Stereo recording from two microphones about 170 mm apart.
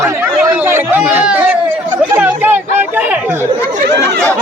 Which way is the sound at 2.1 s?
10° right (ahead or behind).